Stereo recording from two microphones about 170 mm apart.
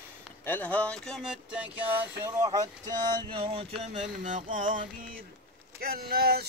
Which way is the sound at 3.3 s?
35° right (ahead or behind).